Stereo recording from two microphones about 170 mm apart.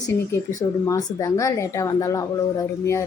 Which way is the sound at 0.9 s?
20° left (ahead or behind).